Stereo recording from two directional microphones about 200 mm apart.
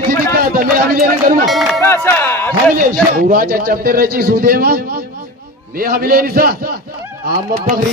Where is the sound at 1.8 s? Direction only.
10° left (ahead or behind).